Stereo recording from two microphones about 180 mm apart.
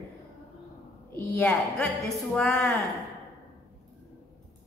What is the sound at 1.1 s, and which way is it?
A woman's voice, 10° left (ahead or behind).